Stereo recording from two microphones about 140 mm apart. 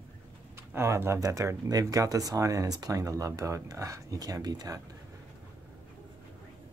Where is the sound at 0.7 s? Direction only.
20° right (ahead or behind).